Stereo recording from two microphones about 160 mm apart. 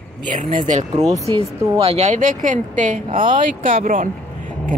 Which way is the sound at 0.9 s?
25° right (ahead or behind).